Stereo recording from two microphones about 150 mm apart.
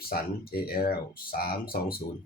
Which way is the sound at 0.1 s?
90° left.